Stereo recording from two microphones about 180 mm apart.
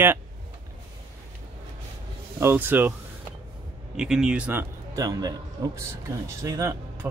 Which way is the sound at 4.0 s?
5° right (ahead or behind).